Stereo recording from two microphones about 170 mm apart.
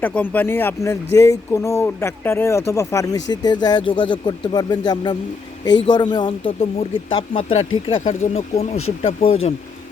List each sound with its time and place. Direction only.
0.0 s speech: 10° left (ahead or behind); by 9.1 s 40° left (ahead or behind)